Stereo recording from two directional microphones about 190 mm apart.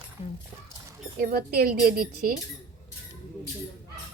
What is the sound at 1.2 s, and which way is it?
Speech, 50° right (ahead or behind).